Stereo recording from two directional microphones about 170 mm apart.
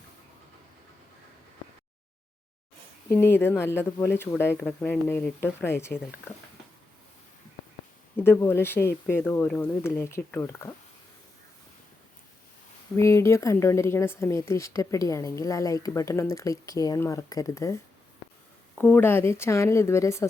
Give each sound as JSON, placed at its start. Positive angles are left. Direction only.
{"t": 3.1, "sound": "speech", "side_deg": 10}
{"t": 8.1, "sound": "speech", "side_deg": 15}
{"t": 13.0, "sound": "speech", "side_deg": 15}
{"t": 18.8, "sound": "speech", "side_deg": 10}